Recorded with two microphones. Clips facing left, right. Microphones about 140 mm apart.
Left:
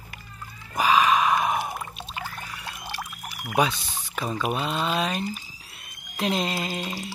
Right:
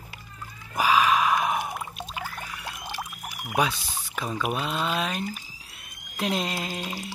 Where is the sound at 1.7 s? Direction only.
10° right (ahead or behind).